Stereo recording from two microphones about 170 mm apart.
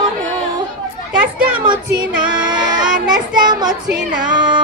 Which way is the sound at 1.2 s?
5° right (ahead or behind).